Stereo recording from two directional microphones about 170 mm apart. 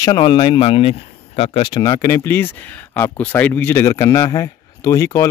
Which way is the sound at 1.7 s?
25° left (ahead or behind).